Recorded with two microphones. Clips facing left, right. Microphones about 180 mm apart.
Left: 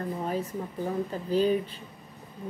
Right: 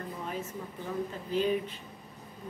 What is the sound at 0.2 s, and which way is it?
Speech, 35° left (ahead or behind).